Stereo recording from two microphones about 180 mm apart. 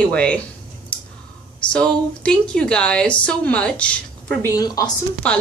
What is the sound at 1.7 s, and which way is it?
Speech, 5° left (ahead or behind).